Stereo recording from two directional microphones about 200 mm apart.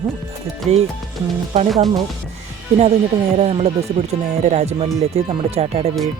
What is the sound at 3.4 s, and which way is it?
Speech, 30° right (ahead or behind).